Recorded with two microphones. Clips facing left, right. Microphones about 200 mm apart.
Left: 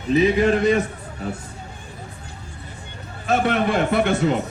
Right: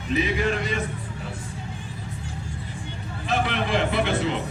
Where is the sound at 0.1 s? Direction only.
40° left (ahead or behind).